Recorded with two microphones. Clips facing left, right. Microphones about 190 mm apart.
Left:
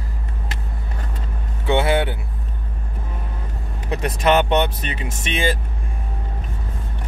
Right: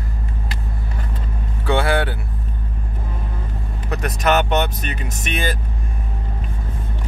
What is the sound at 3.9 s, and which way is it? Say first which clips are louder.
Speech: left 1 dB; 30° left (ahead or behind).